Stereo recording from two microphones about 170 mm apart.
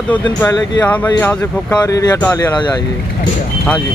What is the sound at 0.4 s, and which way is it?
Speech, 15° left (ahead or behind).